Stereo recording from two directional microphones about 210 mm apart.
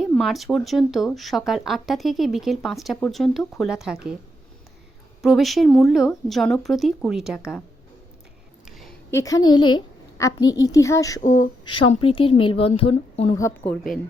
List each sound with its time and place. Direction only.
0.2 s speech: centre (ahead or behind)
5.2 s speech: centre (ahead or behind)
9.0 s a woman's voice: 15° left (ahead or behind)
13.4 s speech: 5° left (ahead or behind)